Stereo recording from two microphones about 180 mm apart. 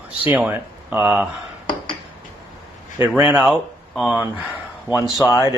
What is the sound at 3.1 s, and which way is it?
Speech, 5° right (ahead or behind).